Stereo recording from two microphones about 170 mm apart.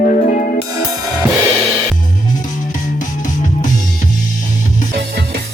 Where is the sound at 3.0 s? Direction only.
50° left (ahead or behind).